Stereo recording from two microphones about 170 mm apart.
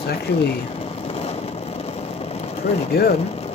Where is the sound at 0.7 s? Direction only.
35° left (ahead or behind).